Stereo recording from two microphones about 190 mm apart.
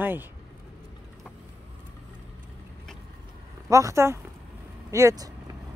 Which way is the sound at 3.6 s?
15° right (ahead or behind).